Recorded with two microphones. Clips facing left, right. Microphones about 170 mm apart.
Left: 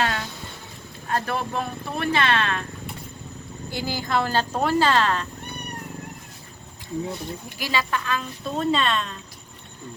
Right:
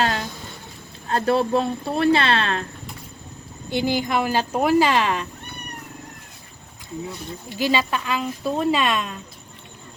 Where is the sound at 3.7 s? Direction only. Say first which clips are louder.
Right 5 dB; 20° right (ahead or behind).